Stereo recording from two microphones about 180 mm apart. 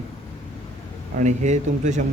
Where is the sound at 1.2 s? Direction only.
40° right (ahead or behind).